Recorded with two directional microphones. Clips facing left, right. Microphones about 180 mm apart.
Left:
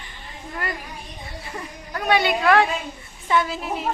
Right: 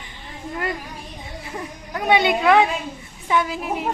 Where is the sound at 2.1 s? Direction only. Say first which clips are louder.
Right 2 dB; 20° right (ahead or behind).